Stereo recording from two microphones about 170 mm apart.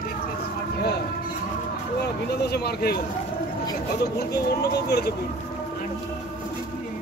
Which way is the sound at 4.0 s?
70° left (ahead or behind).